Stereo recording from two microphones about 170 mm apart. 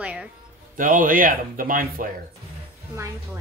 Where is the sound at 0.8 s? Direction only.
55° right (ahead or behind).